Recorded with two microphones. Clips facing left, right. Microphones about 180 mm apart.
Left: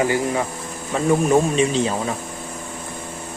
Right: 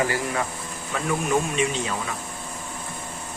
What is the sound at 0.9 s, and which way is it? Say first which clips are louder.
Speech: left 7 dB; 30° left (ahead or behind).